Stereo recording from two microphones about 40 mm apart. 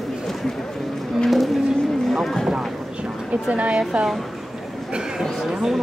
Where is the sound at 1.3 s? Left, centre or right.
Centre.